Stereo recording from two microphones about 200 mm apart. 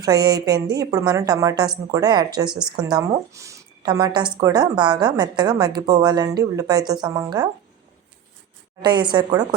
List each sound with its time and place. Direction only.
0.0 s speech: 20° right (ahead or behind)
2.5 s a woman's voice: 5° right (ahead or behind)
2.8 s speech: 20° right (ahead or behind)
8.8 s speech: 25° right (ahead or behind)